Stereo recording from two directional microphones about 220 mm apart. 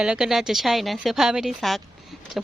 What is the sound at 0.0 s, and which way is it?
A woman's voice, 5° right (ahead or behind).